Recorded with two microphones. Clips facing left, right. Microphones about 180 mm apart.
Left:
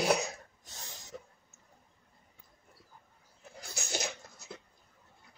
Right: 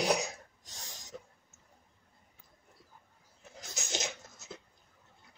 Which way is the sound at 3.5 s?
20° right (ahead or behind).